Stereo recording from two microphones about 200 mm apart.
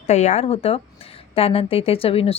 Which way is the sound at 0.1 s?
35° left (ahead or behind).